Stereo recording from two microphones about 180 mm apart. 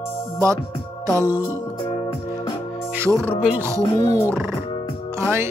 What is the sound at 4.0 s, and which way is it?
Speech, 15° left (ahead or behind).